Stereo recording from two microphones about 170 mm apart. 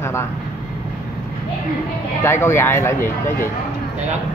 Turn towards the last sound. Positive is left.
turn(degrees=15)  # may be behind; listen again after turning